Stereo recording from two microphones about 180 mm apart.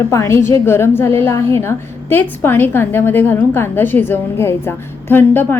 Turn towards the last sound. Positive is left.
turn(degrees=10)  # may be behind; listen again after turning